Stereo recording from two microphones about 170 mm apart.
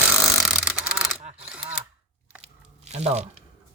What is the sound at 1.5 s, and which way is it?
Camera, 5° right (ahead or behind).